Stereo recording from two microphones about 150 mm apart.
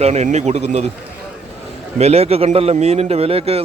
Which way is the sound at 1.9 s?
45° right (ahead or behind).